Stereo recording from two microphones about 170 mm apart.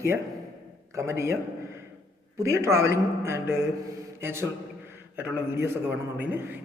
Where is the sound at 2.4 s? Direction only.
15° right (ahead or behind).